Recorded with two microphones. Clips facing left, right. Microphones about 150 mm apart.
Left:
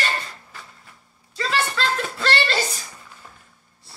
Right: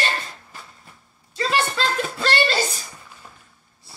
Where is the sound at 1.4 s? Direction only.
15° right (ahead or behind).